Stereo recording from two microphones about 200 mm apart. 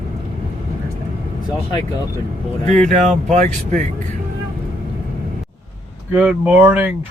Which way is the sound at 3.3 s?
35° right (ahead or behind).